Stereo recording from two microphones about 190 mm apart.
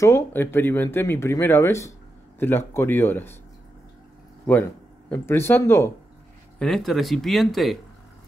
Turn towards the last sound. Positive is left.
turn(degrees=0)  # may be behind; listen again after turning